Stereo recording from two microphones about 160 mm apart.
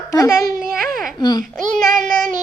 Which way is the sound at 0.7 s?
65° right (ahead or behind).